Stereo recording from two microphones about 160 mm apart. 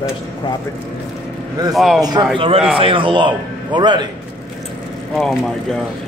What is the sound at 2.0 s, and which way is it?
A man's voice, 25° right (ahead or behind).